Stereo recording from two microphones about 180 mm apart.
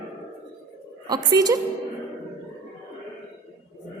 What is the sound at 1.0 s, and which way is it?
Speech, 20° right (ahead or behind).